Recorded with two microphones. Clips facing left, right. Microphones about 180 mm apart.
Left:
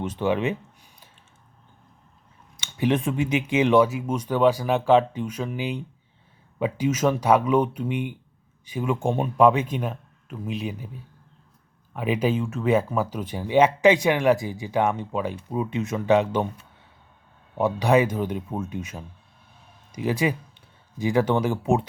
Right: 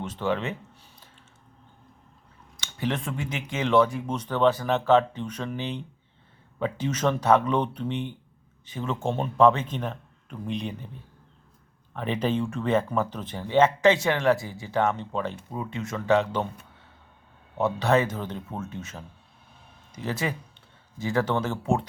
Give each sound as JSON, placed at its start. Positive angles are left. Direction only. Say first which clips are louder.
{"t": 0.0, "sound": "speech", "louder": "left 4 dB", "side_deg": 15}
{"t": 2.6, "sound": "speech", "louder": "left 6 dB", "side_deg": 15}
{"t": 17.6, "sound": "speech", "louder": "left 3 dB", "side_deg": 15}